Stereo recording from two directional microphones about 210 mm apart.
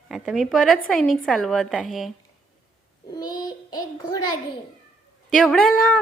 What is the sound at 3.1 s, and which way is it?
Child singing, 20° left (ahead or behind).